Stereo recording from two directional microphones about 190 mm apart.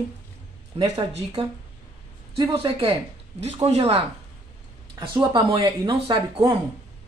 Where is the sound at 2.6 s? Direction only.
25° right (ahead or behind).